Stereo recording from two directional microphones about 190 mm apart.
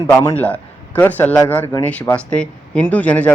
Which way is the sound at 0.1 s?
10° left (ahead or behind).